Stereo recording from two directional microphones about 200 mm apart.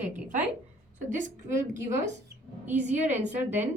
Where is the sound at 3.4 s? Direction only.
10° right (ahead or behind).